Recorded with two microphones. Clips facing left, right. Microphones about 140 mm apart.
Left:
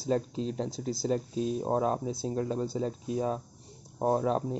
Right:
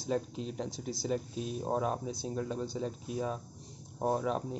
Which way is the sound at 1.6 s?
30° left (ahead or behind).